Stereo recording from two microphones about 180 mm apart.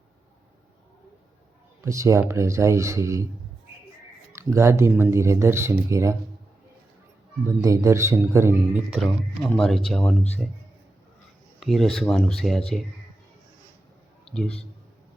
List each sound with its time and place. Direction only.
1.8 s speech: 15° right (ahead or behind)
4.3 s speech: 15° right (ahead or behind)
7.4 s speech: 15° right (ahead or behind)
8.9 s speech: centre (ahead or behind)
11.6 s speech: centre (ahead or behind)
14.3 s a man's voice: 5° left (ahead or behind)